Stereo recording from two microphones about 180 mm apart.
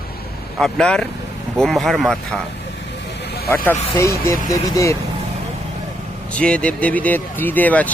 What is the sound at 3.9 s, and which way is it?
Speech, 15° left (ahead or behind).